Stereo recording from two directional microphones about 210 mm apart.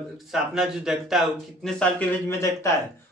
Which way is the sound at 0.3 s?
Centre (ahead or behind).